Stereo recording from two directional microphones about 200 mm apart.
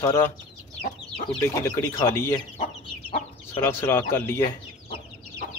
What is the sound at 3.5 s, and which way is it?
Speech, 10° left (ahead or behind).